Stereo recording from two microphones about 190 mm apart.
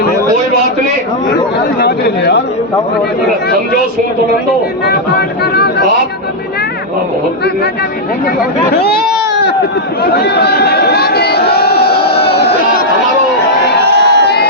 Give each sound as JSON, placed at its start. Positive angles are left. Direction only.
{"t": 1.8, "sound": "speech", "side_deg": 60}
{"t": 5.4, "sound": "speech", "side_deg": 60}
{"t": 8.4, "sound": "speech", "side_deg": 55}
{"t": 12.1, "sound": "a sound", "side_deg": 30}
{"t": 13.8, "sound": "crowd", "side_deg": -60}